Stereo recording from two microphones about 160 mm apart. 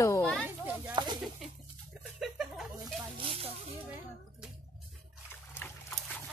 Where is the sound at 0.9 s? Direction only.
25° right (ahead or behind).